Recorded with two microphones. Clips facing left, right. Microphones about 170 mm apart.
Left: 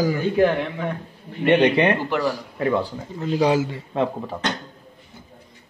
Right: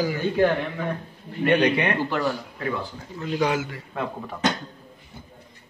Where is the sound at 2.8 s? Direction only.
30° left (ahead or behind).